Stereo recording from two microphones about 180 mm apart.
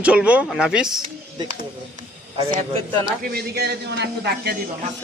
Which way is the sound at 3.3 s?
60° right (ahead or behind).